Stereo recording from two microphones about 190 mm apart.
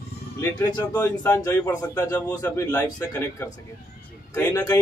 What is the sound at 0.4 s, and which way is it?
A man's voice, 20° left (ahead or behind).